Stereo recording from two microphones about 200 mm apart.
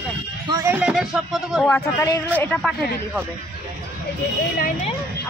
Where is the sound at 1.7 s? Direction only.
15° left (ahead or behind).